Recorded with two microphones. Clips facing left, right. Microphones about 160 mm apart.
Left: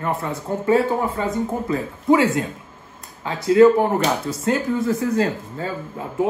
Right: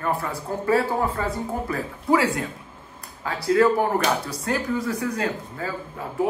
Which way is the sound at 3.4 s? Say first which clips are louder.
Left 6 dB; 25° left (ahead or behind).